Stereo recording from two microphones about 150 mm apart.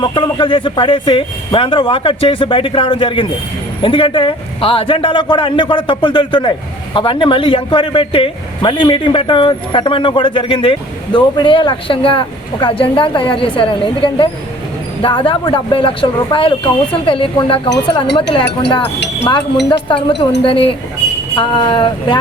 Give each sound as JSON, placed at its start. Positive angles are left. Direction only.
{"t": 0.0, "sound": "a man's voice", "side_deg": 35}
{"t": 19.9, "sound": "a man's voice", "side_deg": 35}